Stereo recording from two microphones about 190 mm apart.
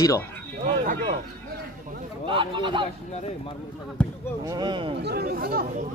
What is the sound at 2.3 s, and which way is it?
Speech, 25° right (ahead or behind).